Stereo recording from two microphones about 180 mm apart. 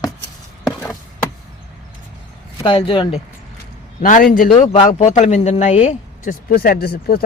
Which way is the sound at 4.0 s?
45° left (ahead or behind).